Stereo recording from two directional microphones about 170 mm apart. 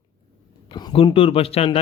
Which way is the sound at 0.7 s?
25° left (ahead or behind).